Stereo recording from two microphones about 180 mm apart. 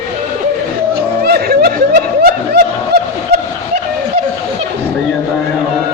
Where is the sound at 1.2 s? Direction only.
60° right (ahead or behind).